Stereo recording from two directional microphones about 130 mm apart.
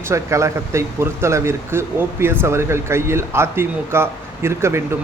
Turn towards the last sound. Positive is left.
turn(degrees=-20)  # may be behind; listen again after turning